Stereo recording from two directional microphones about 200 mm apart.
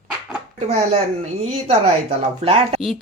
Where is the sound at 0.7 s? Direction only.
30° right (ahead or behind).